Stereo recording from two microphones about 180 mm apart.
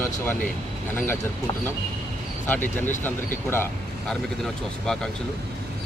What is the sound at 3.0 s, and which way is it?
Speech, 10° left (ahead or behind).